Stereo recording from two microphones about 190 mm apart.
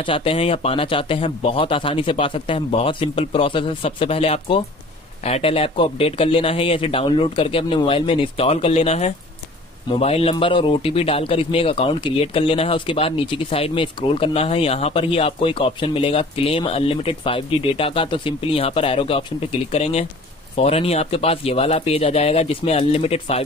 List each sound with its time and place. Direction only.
0.0 s a man's voice: 30° left (ahead or behind)